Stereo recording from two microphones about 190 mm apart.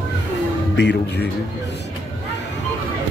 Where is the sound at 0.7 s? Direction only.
65° left (ahead or behind).